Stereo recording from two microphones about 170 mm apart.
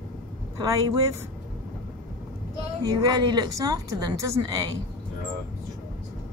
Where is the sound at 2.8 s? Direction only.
20° right (ahead or behind).